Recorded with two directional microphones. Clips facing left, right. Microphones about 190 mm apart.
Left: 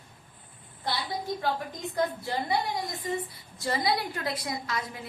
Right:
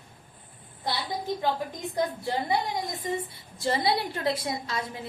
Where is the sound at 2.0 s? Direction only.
20° right (ahead or behind).